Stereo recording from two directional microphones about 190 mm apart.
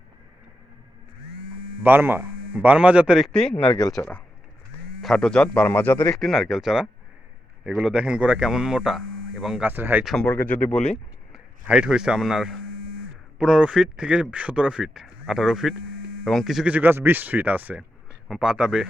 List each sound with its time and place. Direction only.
1.8 s speech: 10° right (ahead or behind)